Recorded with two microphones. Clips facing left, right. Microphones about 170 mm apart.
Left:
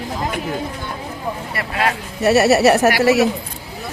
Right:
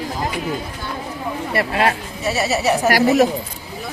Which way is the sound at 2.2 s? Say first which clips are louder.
Left 8 dB; 65° left (ahead or behind).